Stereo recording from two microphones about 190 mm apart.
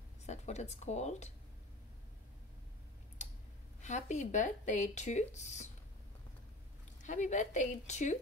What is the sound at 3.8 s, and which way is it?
Speech, 40° left (ahead or behind).